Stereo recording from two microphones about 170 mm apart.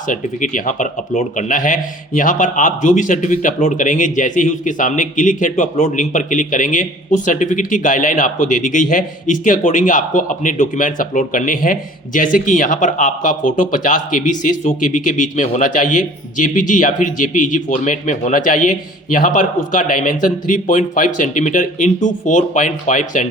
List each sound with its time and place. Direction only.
0.1 s a man's voice: 50° left (ahead or behind)